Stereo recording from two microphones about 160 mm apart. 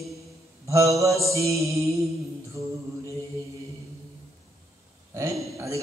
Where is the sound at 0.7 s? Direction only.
20° right (ahead or behind).